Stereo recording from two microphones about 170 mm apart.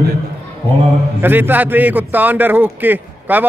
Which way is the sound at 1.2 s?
10° right (ahead or behind).